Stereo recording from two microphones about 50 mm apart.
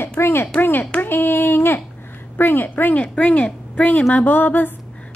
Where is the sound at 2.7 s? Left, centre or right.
Left.